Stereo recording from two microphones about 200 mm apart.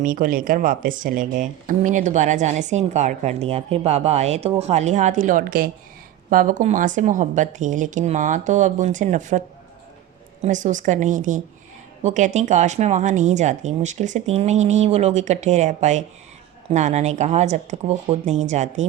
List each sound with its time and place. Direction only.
0.0 s speech: 45° right (ahead or behind)
10.4 s speech: 40° right (ahead or behind)